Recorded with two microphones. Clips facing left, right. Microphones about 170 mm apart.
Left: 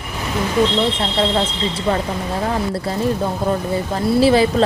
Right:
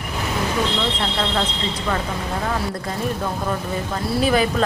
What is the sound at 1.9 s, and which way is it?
Speech, 25° left (ahead or behind).